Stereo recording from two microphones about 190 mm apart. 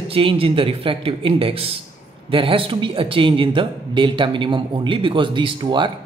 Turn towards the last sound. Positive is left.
turn(degrees=-25)  # may be behind; listen again after turning